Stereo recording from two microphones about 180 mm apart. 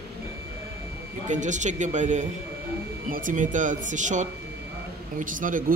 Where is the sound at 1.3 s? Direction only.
45° right (ahead or behind).